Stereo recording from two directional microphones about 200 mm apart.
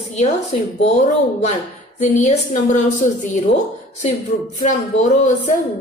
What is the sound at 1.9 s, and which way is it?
A woman's voice, 35° left (ahead or behind).